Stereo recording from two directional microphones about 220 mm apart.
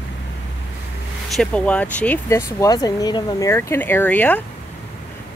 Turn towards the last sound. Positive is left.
turn(degrees=5)  # may be behind; listen again after turning